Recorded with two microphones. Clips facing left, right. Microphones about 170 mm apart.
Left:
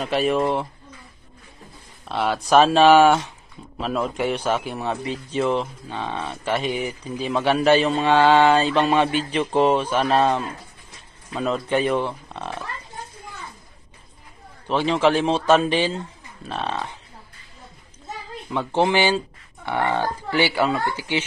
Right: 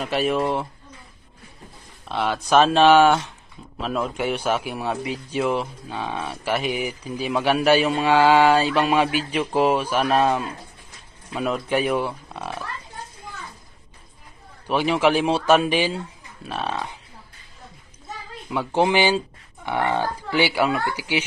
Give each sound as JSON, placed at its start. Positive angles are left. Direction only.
{"t": 0.0, "sound": "speech", "side_deg": 0}
{"t": 2.0, "sound": "a man's voice", "side_deg": 0}
{"t": 14.7, "sound": "a man's voice", "side_deg": -10}
{"t": 18.8, "sound": "a man's voice", "side_deg": -15}